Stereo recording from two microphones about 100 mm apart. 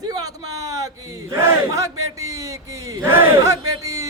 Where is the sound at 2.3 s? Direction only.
35° right (ahead or behind).